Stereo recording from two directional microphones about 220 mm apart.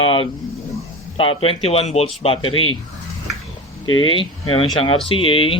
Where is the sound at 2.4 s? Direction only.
70° left (ahead or behind).